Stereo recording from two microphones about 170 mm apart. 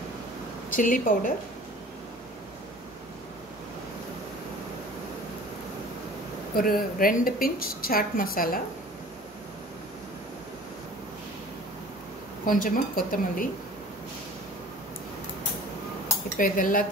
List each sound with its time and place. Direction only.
0.7 s speech: 50° left (ahead or behind)
6.5 s a woman's voice: 60° left (ahead or behind)
12.4 s speech: 55° left (ahead or behind)
16.3 s speech: 55° left (ahead or behind)